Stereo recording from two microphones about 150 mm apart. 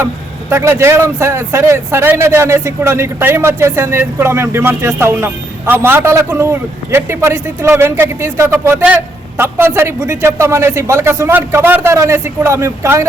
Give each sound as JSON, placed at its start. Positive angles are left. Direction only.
{"t": 0.5, "sound": "speech", "side_deg": -15}